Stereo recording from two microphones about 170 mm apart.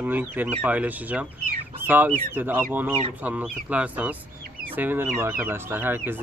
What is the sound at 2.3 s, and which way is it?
Speech, 10° right (ahead or behind).